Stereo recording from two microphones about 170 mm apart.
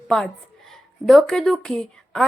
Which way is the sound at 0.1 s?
Centre (ahead or behind).